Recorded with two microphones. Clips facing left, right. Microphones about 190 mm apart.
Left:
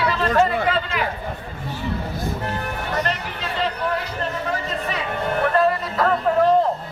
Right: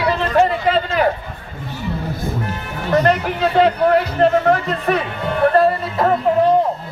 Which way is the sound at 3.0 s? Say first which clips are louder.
Right 11 dB; 60° right (ahead or behind).